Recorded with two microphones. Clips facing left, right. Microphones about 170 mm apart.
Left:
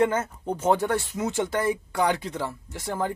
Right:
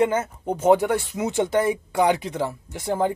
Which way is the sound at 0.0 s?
15° right (ahead or behind).